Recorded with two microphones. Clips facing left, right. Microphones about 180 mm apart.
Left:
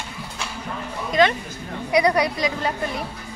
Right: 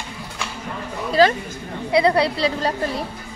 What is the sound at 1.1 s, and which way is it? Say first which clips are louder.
A woman's voice: right 3 dB; 35° right (ahead or behind).